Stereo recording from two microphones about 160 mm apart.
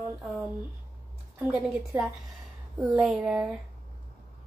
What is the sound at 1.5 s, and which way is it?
Speech, 5° right (ahead or behind).